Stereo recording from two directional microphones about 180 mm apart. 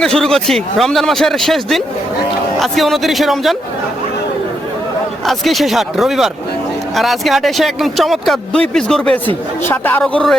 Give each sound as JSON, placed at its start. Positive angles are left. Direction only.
{"t": 0.0, "sound": "speech", "side_deg": 5}
{"t": 5.2, "sound": "speech", "side_deg": 0}